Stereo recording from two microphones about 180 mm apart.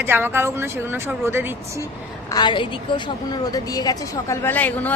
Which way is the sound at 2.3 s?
25° left (ahead or behind).